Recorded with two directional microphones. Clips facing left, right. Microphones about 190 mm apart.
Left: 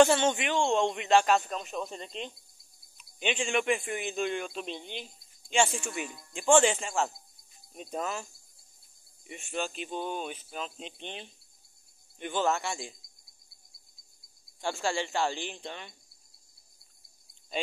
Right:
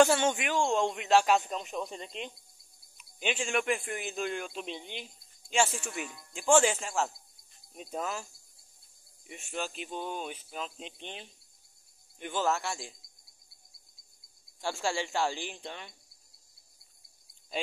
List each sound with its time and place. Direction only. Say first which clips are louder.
0.0 s speech: left 2 dB; 5° right (ahead or behind)
9.3 s speech: left 2 dB; centre (ahead or behind)
14.6 s speech: left 1 dB; 10° right (ahead or behind)